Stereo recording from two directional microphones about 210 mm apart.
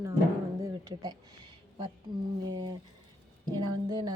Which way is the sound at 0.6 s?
15° right (ahead or behind).